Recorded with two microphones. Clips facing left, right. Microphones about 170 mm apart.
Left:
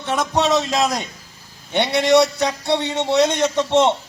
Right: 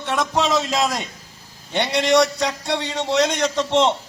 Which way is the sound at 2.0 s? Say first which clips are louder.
Left 2 dB; 20° left (ahead or behind).